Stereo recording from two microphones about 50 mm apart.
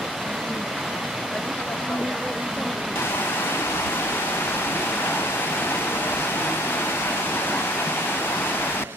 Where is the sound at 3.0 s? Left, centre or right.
Left.